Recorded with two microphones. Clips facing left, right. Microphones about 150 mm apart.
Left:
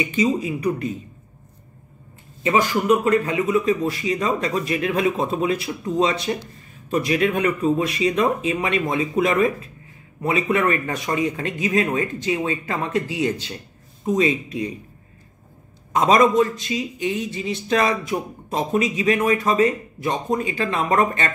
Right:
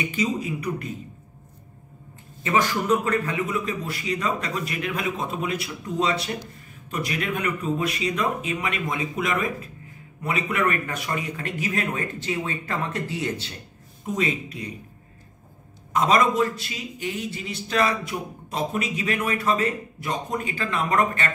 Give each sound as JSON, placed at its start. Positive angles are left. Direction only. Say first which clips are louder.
{"t": 0.1, "sound": "a man's voice", "louder": "left 5 dB", "side_deg": 25}
{"t": 2.4, "sound": "a man's voice", "louder": "left 4 dB", "side_deg": 15}
{"t": 15.9, "sound": "a man's voice", "louder": "left 4 dB", "side_deg": 20}